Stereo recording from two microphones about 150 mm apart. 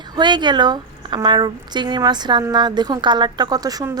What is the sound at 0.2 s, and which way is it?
A woman's voice, 30° right (ahead or behind).